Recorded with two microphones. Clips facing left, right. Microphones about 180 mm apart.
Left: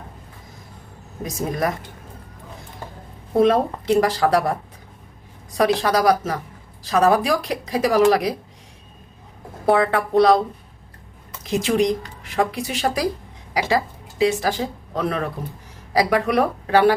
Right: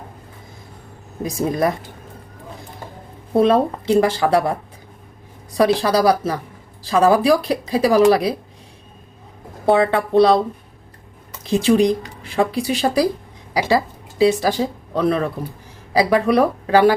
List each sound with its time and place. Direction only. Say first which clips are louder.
1.2 s a woman's voice: right 4 dB; 30° right (ahead or behind)
3.3 s speech: right 2 dB; 30° right (ahead or behind)
5.5 s a woman's voice: right 3 dB; 30° right (ahead or behind)
9.6 s speech: right 2 dB; 25° right (ahead or behind)
11.5 s a woman's voice: right 4 dB; 30° right (ahead or behind)